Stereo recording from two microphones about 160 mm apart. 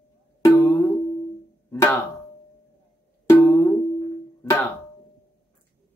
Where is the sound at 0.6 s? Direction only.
10° left (ahead or behind).